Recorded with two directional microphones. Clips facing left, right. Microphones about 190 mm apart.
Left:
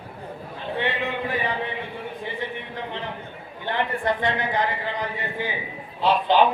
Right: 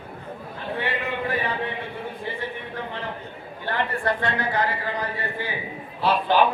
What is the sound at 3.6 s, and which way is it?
A man's voice, 20° left (ahead or behind).